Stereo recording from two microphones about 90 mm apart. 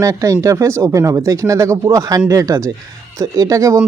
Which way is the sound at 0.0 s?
35° right (ahead or behind).